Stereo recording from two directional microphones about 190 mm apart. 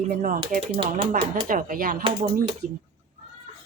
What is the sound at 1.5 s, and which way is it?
Speech, 45° right (ahead or behind).